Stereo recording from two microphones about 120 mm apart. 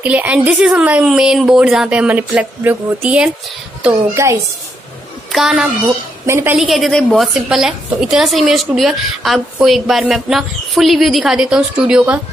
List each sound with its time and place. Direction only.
0.0 s speech: 15° right (ahead or behind)
4.1 s a woman's voice: 25° right (ahead or behind)
5.3 s a woman's voice: 5° right (ahead or behind)
6.2 s a woman's voice: 20° right (ahead or behind)
6.5 s a woman's voice: centre (ahead or behind)